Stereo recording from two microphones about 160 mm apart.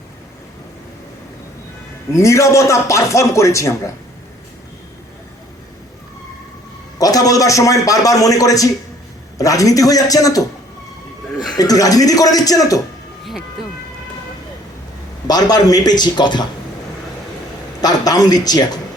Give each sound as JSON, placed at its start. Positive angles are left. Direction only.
{"t": 2.1, "sound": "a man's voice", "side_deg": 20}
{"t": 7.0, "sound": "a man's voice", "side_deg": 20}
{"t": 11.5, "sound": "a man's voice", "side_deg": 25}
{"t": 15.3, "sound": "a man's voice", "side_deg": 25}
{"t": 17.7, "sound": "a man's voice", "side_deg": 25}